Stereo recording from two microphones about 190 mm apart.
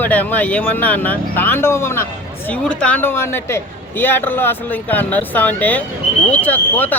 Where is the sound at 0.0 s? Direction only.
10° left (ahead or behind).